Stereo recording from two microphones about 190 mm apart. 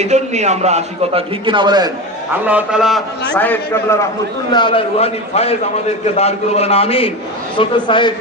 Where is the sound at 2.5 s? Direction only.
5° right (ahead or behind).